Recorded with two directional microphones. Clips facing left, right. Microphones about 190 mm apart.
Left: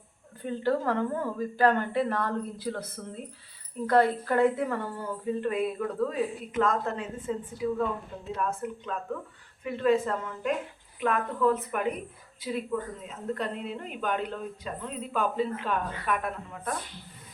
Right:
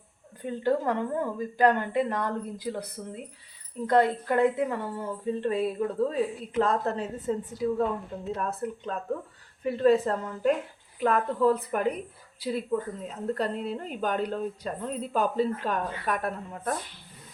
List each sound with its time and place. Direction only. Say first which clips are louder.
0.4 s a woman's voice: right 1 dB; 15° right (ahead or behind); by 16.7 s 40° right (ahead or behind)